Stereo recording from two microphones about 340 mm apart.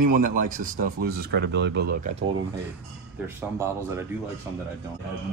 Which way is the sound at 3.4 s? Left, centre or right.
Centre.